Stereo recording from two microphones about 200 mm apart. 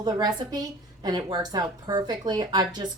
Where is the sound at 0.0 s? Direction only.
20° right (ahead or behind).